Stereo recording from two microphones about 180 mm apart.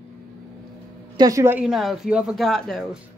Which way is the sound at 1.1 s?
20° right (ahead or behind).